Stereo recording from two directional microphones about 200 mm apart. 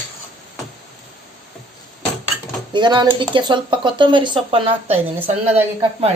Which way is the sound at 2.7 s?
20° right (ahead or behind).